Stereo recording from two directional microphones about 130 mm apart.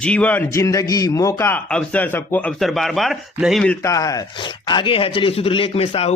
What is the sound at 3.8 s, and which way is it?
Speech, 25° left (ahead or behind).